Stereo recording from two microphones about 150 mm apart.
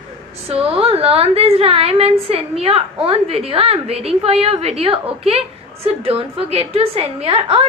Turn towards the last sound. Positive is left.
turn(degrees=-35)  # may be behind; listen again after turning